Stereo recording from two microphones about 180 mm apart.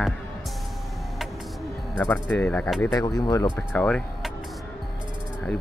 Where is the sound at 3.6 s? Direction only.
10° left (ahead or behind).